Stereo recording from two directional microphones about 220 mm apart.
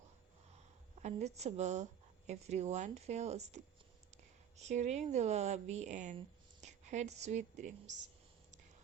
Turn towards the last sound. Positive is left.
turn(degrees=-35)  # may be behind; listen again after turning